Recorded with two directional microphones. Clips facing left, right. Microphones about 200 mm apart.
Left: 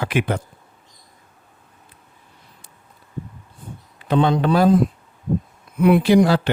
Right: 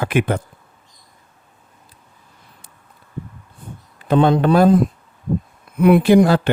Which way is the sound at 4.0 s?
50° right (ahead or behind).